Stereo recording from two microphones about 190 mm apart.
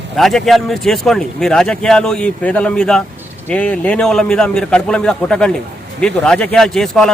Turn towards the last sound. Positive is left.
turn(degrees=0)  # may be behind; listen again after turning